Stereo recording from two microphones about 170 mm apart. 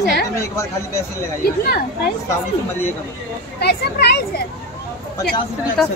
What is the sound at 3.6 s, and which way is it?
Speech, 70° left (ahead or behind).